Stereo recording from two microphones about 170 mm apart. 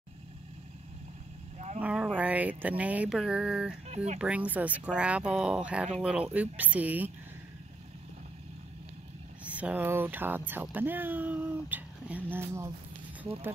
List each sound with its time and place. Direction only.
1.8 s speech: 10° right (ahead or behind)
2.8 s a sound: 10° right (ahead or behind)
3.9 s speech: 40° right (ahead or behind)
4.2 s speech: 5° right (ahead or behind)
4.9 s a sound: 5° right (ahead or behind)
6.3 s speech: 10° right (ahead or behind)
9.4 s speech: 10° right (ahead or behind)